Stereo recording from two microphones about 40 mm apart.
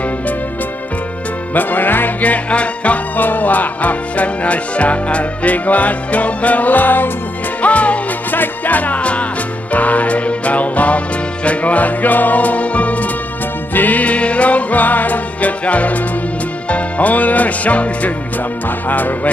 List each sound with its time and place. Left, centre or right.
1.5 s music: left
2.2 s music: left
3.2 s music: left
7.6 s music: left
8.3 s music: left
18.9 s speech: left